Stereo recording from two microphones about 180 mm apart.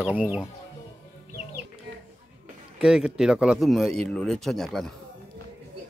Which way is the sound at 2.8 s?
5° right (ahead or behind).